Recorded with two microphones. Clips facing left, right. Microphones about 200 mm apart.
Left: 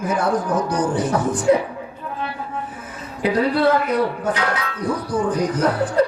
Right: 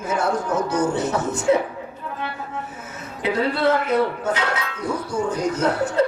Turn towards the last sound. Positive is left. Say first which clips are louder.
# left 2 dB
turn(degrees=-25)  # may be behind; listen again after turning